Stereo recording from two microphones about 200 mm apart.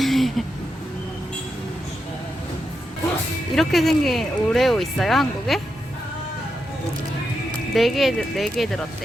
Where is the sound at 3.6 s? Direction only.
Centre (ahead or behind).